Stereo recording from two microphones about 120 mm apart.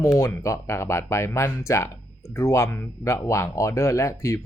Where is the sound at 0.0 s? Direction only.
25° left (ahead or behind).